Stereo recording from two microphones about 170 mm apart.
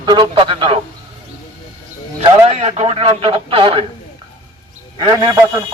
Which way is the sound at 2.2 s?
40° right (ahead or behind).